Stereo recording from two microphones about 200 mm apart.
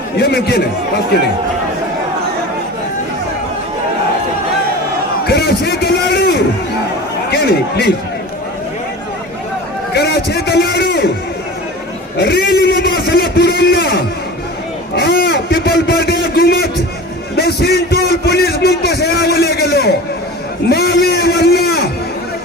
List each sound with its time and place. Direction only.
0.2 s a man's voice: 55° left (ahead or behind)
5.2 s a sound: 50° left (ahead or behind)
7.3 s a man's voice: 55° left (ahead or behind)
9.9 s a man's voice: 55° left (ahead or behind)
12.1 s a man's voice: 55° left (ahead or behind)
14.9 s a sound: 50° left (ahead or behind)